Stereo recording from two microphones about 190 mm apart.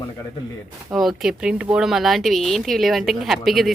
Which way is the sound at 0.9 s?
Centre (ahead or behind).